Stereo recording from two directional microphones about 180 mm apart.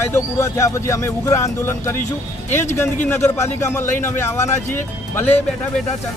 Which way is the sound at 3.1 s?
15° left (ahead or behind).